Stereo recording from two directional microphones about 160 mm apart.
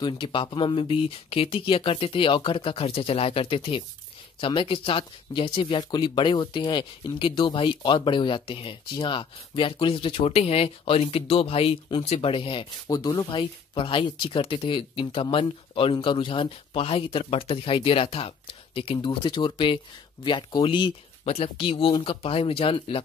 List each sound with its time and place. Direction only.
0.0 s speech: 30° left (ahead or behind)